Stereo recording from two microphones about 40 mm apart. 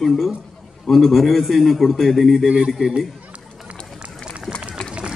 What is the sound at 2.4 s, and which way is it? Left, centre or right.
Speech, right.